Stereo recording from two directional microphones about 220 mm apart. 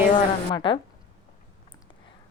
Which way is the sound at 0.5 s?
20° left (ahead or behind).